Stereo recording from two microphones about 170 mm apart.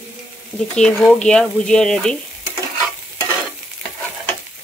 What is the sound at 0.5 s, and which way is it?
Speech, 5° left (ahead or behind).